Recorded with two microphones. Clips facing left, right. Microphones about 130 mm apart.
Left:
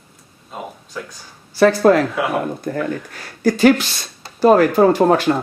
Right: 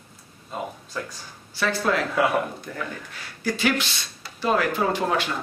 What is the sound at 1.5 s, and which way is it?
Speech, 45° left (ahead or behind).